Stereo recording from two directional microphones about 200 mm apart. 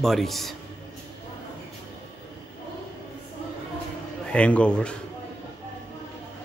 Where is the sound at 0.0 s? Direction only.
Centre (ahead or behind).